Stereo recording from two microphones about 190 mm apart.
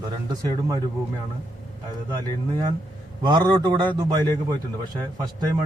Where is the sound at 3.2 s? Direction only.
20° right (ahead or behind).